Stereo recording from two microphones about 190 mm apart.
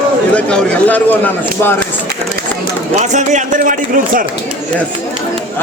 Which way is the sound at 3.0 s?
40° right (ahead or behind).